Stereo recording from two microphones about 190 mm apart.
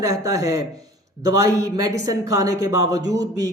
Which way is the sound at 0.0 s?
15° right (ahead or behind).